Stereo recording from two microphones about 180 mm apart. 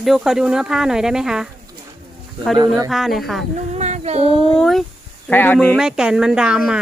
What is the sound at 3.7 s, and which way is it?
Humming, 40° right (ahead or behind).